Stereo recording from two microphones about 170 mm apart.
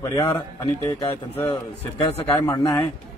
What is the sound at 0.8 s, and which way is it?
Speech, 15° left (ahead or behind).